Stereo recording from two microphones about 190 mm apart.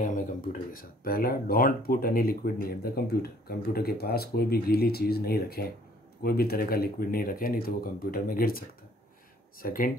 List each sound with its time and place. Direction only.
0.0 s speech: 45° left (ahead or behind)